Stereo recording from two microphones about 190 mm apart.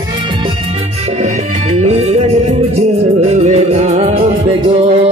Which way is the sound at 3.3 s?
35° right (ahead or behind).